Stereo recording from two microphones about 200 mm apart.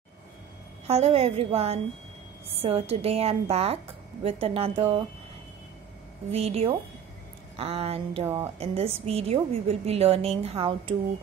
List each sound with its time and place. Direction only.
0.8 s a woman's voice: 30° right (ahead or behind)
6.3 s a woman's voice: 30° right (ahead or behind)